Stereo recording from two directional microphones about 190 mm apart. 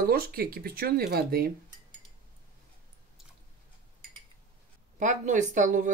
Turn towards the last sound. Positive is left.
turn(degrees=-40)  # may be behind; listen again after turning